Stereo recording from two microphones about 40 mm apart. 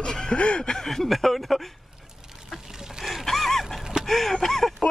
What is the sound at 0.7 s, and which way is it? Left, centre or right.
Chuckle, centre.